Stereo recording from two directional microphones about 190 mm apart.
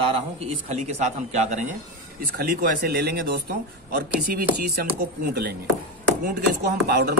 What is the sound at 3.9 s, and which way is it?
Speech, 50° right (ahead or behind).